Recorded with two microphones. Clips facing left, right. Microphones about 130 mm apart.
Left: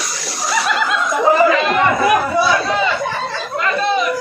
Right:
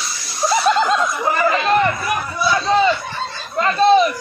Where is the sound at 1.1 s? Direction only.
90° left.